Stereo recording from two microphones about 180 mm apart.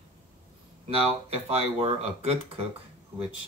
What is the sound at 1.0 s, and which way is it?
Speech, 35° right (ahead or behind).